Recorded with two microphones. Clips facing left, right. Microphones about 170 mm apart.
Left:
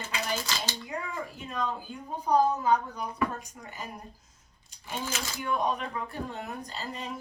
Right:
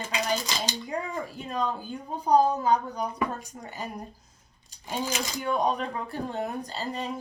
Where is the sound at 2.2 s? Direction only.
35° right (ahead or behind).